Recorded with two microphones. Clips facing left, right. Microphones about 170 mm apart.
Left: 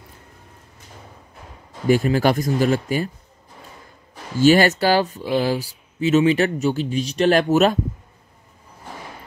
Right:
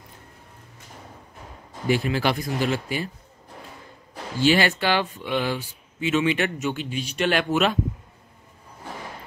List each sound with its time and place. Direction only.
1.9 s speech: 45° left (ahead or behind)
4.4 s speech: 45° left (ahead or behind)